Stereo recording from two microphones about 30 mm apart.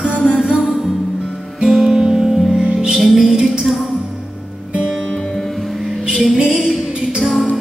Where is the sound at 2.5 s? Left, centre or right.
Right.